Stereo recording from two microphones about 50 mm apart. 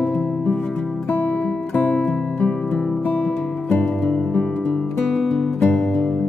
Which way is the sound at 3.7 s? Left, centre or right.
Centre.